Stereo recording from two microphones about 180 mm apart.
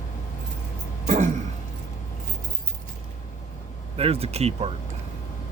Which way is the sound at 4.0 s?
35° right (ahead or behind).